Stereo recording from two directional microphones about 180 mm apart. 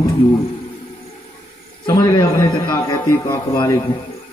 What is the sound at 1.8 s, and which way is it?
A man's voice, 20° left (ahead or behind).